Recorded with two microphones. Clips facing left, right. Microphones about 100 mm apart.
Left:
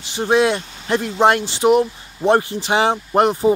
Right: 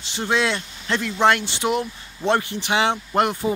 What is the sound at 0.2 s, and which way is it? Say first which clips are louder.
Speech: left 6 dB; 20° left (ahead or behind).